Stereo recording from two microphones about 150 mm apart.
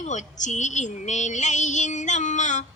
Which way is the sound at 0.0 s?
55° left (ahead or behind).